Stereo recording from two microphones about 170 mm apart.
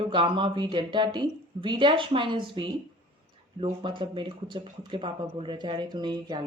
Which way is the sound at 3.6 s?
30° right (ahead or behind).